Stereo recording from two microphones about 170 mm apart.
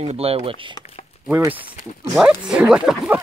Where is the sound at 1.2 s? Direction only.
10° right (ahead or behind).